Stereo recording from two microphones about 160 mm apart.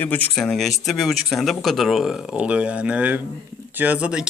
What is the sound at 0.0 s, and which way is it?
Speech, 10° left (ahead or behind).